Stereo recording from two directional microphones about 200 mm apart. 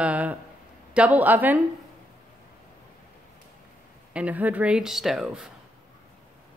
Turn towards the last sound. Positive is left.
turn(degrees=-5)  # may be behind; listen again after turning